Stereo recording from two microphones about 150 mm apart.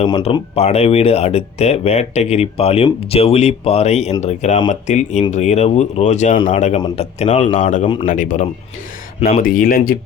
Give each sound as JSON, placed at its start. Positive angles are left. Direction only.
{"t": 0.1, "sound": "speech", "side_deg": 35}